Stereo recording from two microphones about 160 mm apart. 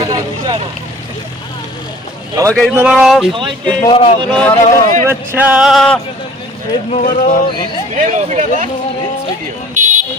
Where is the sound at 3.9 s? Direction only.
35° left (ahead or behind).